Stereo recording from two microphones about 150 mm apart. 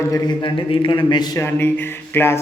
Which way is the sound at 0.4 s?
35° left (ahead or behind).